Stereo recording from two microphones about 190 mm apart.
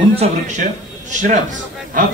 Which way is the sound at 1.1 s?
40° right (ahead or behind).